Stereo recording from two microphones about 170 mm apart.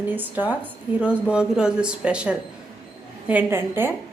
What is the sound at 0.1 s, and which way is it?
A woman's voice, 10° right (ahead or behind).